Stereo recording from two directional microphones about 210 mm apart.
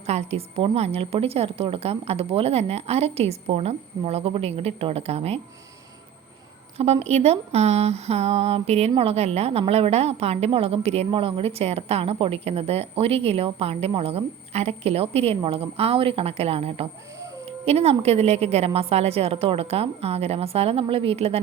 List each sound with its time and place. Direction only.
0.0 s speech: 30° right (ahead or behind)
6.7 s speech: 30° right (ahead or behind)